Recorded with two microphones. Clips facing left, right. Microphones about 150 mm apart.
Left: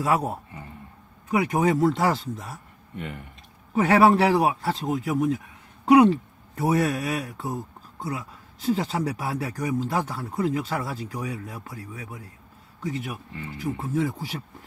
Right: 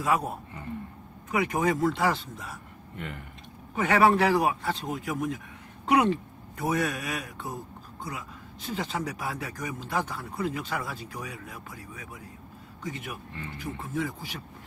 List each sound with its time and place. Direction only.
0.0 s a man's voice: 40° left (ahead or behind)
3.7 s a man's voice: 35° left (ahead or behind)
6.5 s a man's voice: 35° left (ahead or behind)